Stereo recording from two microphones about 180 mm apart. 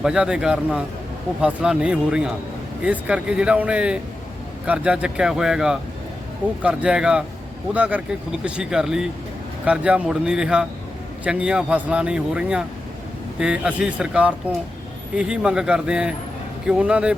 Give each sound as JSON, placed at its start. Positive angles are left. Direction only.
{"t": 0.0, "sound": "a man's voice", "side_deg": -5}